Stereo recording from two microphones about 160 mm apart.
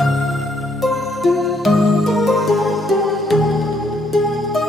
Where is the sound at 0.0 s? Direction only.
Centre (ahead or behind).